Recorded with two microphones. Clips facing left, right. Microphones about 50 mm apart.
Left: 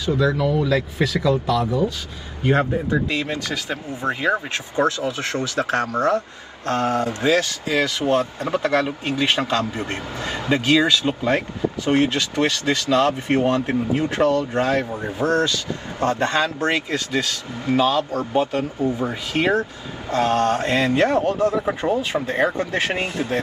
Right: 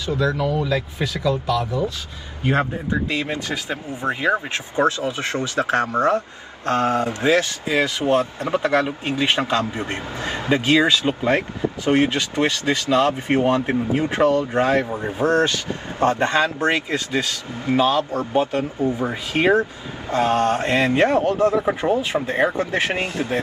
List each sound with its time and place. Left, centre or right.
0.4 s speech: centre
2.6 s a man's voice: right
4.8 s a man's voice: right
21.5 s speech: centre
21.9 s a man's voice: right